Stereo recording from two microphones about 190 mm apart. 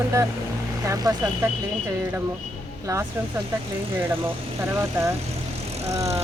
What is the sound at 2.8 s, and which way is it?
Speech, 15° right (ahead or behind).